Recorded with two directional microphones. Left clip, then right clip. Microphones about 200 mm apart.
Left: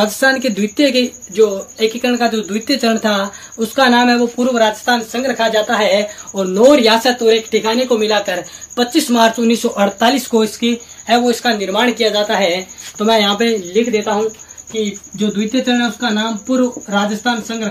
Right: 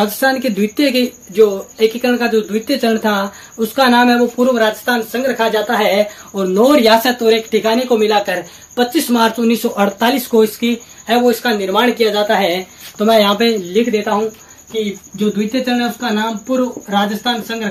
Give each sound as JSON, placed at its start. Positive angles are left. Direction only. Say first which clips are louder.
{"t": 0.0, "sound": "speech", "louder": "left 1 dB", "side_deg": 5}
{"t": 14.7, "sound": "speech", "louder": "even", "side_deg": 0}